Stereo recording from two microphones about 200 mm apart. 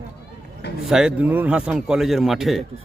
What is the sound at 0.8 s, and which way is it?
A man's voice, 5° right (ahead or behind).